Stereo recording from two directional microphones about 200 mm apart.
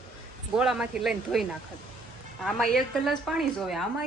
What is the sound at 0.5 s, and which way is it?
A woman's voice, 5° right (ahead or behind).